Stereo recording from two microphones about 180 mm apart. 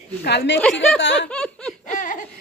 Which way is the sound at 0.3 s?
70° left (ahead or behind).